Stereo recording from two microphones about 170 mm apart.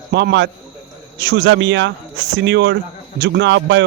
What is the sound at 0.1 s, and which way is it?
Speech, 90° right.